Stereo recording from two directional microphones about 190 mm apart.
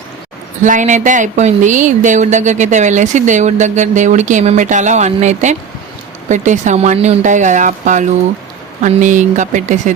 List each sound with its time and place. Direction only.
0.6 s speech: 40° right (ahead or behind)